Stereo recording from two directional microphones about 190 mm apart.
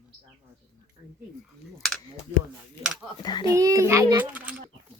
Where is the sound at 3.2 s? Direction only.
25° left (ahead or behind).